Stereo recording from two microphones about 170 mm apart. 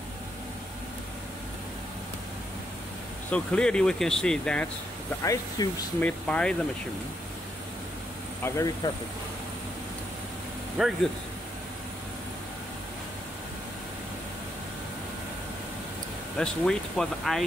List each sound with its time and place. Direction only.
3.3 s speech: 5° left (ahead or behind)
5.2 s speech: 20° left (ahead or behind)
8.4 s speech: 15° left (ahead or behind)
10.8 s speech: centre (ahead or behind)
16.3 s speech: 5° left (ahead or behind)